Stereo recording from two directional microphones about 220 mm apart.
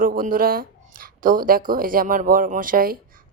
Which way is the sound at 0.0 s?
40° right (ahead or behind).